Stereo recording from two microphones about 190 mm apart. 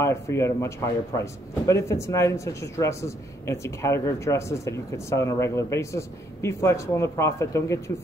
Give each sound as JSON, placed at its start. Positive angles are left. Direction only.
{"t": 0.0, "sound": "speech", "side_deg": 15}